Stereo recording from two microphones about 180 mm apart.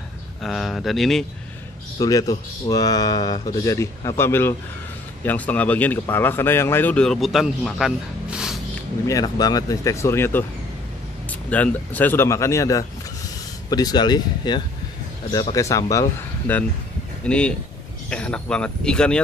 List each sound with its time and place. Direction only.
0.4 s speech: centre (ahead or behind)
2.0 s speech: 20° left (ahead or behind); by 8.5 s 5° right (ahead or behind)
9.0 s speech: 20° left (ahead or behind)